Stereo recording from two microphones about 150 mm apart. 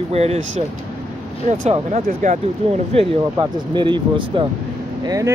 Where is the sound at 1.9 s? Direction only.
55° right (ahead or behind).